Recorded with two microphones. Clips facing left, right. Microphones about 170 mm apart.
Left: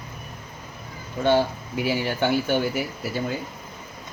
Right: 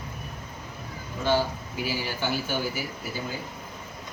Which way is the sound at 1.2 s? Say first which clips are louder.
Left 5 dB; 65° left (ahead or behind).